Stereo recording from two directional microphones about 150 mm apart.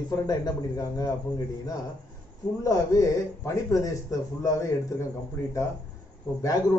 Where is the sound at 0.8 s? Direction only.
25° left (ahead or behind).